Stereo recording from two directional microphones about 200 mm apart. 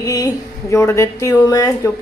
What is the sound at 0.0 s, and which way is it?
A woman's voice, 20° left (ahead or behind).